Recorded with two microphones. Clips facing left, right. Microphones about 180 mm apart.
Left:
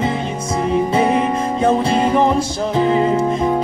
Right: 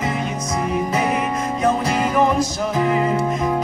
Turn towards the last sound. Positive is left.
turn(degrees=25)  # may be behind; listen again after turning